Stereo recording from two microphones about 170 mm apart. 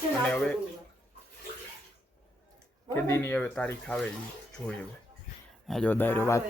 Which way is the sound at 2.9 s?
15° left (ahead or behind).